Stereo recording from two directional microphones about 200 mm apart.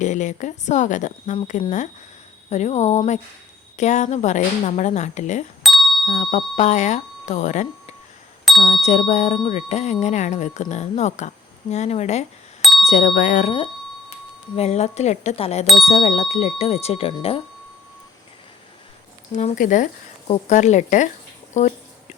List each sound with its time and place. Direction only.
0.0 s speech: 35° left (ahead or behind)
5.6 s doorbell: centre (ahead or behind)
6.1 s speech: 35° left (ahead or behind)
8.5 s a sound: centre (ahead or behind)
8.8 s speech: 35° left (ahead or behind)
12.6 s bicycle bell: centre (ahead or behind)
12.9 s speech: 35° left (ahead or behind)
14.5 s speech: 30° left (ahead or behind)
15.6 s speech: centre (ahead or behind)
15.9 s speech: 35° left (ahead or behind)
19.3 s speech: 35° left (ahead or behind)